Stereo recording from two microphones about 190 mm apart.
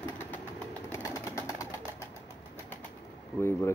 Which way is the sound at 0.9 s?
15° left (ahead or behind).